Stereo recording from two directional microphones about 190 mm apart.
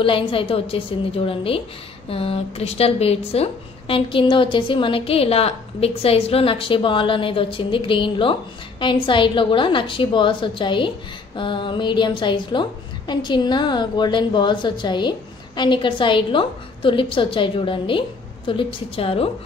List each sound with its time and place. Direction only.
0.0 s speech: 25° left (ahead or behind)